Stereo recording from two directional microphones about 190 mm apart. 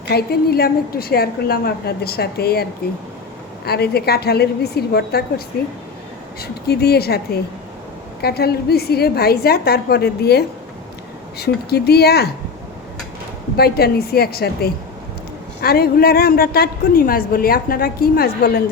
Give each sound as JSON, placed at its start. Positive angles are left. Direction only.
{"t": 0.1, "sound": "a woman's voice", "side_deg": 55}
{"t": 3.7, "sound": "a woman's voice", "side_deg": 55}
{"t": 6.4, "sound": "a woman's voice", "side_deg": 55}
{"t": 8.2, "sound": "a woman's voice", "side_deg": 55}
{"t": 13.6, "sound": "a woman's voice", "side_deg": 55}